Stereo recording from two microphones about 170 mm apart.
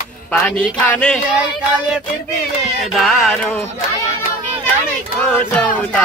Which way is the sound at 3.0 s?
Centre (ahead or behind).